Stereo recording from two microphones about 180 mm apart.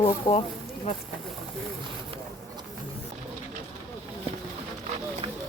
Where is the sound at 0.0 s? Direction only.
30° left (ahead or behind).